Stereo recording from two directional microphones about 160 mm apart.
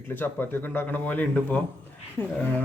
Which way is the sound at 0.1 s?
10° left (ahead or behind).